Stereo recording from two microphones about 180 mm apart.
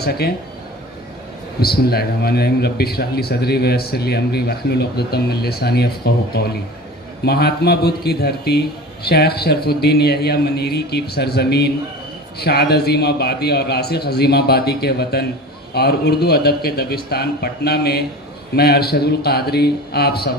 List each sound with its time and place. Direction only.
0.0 s a man's voice: 60° left (ahead or behind)
1.6 s a man's voice: 60° left (ahead or behind)